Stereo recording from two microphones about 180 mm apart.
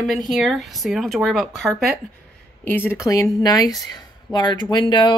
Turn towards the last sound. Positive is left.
turn(degrees=25)  # may be behind; listen again after turning